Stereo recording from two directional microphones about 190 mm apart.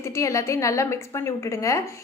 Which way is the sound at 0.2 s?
15° left (ahead or behind).